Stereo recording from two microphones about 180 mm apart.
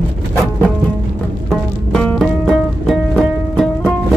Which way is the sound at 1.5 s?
5° left (ahead or behind).